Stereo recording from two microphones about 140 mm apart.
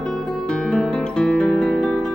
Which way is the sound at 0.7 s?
5° left (ahead or behind).